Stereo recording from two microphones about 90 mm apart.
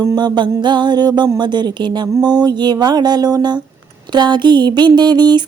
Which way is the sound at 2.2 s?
55° right (ahead or behind).